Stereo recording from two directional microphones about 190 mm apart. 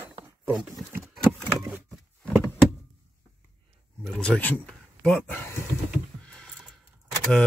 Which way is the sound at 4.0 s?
5° left (ahead or behind).